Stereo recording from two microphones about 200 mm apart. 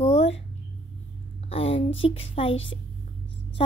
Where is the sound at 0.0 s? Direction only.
30° left (ahead or behind).